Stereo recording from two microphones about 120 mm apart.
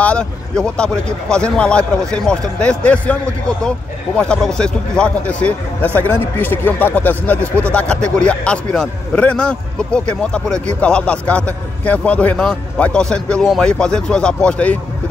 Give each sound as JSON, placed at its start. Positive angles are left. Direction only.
{"t": 0.0, "sound": "a man's voice", "side_deg": 10}